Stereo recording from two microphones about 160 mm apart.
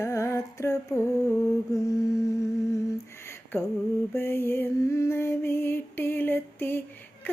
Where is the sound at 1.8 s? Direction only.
20° left (ahead or behind).